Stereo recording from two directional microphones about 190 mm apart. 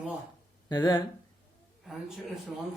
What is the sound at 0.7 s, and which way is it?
Speech, 20° left (ahead or behind).